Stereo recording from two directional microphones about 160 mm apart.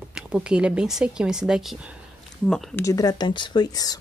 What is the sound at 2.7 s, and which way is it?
Speech, 20° left (ahead or behind).